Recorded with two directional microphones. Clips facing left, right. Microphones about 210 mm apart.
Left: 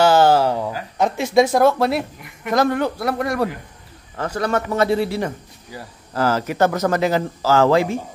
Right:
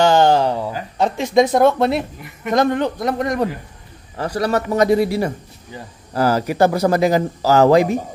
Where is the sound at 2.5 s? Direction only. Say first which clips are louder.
Right 1 dB; 20° right (ahead or behind).